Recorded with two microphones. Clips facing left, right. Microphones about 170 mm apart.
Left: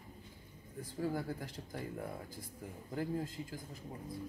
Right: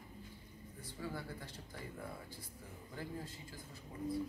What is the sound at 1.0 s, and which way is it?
Speech, 45° left (ahead or behind).